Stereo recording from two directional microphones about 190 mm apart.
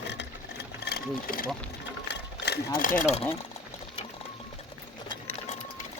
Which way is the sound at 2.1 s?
60° left (ahead or behind).